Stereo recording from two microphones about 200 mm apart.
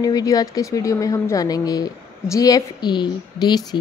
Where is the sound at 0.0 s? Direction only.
20° left (ahead or behind).